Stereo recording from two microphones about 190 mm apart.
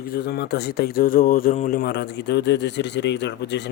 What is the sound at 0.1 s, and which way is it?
Speech, 60° left (ahead or behind).